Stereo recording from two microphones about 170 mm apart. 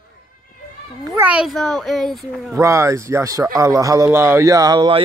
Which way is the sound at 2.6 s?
15° right (ahead or behind).